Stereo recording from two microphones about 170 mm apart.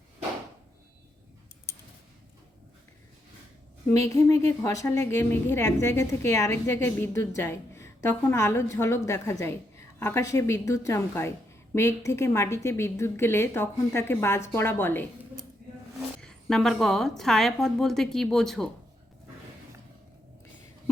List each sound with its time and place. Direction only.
3.9 s a woman's voice: 15° left (ahead or behind)
16.2 s a woman's voice: 5° left (ahead or behind)